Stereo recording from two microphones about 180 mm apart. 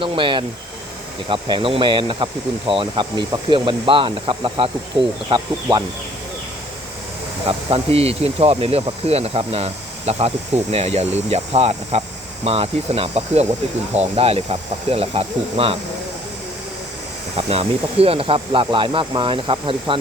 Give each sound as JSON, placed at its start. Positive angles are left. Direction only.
{"t": 0.0, "sound": "speech", "side_deg": -25}
{"t": 7.4, "sound": "speech", "side_deg": -30}
{"t": 17.3, "sound": "speech", "side_deg": -35}